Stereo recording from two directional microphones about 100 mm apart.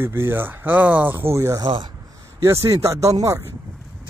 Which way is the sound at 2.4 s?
30° right (ahead or behind).